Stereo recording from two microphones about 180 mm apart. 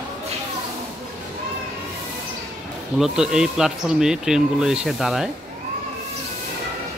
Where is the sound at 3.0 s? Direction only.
5° right (ahead or behind).